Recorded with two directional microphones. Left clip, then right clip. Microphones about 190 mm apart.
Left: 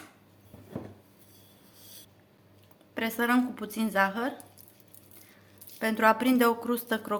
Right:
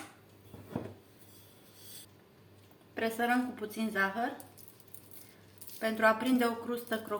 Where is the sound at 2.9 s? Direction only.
70° left (ahead or behind).